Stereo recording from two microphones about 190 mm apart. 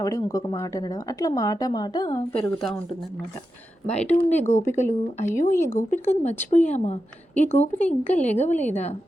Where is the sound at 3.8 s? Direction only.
5° left (ahead or behind).